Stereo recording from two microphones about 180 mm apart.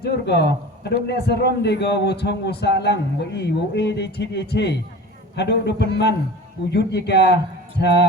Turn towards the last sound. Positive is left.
turn(degrees=70)  # may be behind; listen again after turning